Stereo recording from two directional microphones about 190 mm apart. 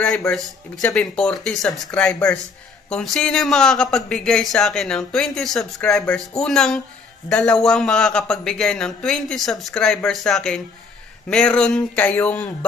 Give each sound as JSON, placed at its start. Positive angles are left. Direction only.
{"t": 0.0, "sound": "speech", "side_deg": 5}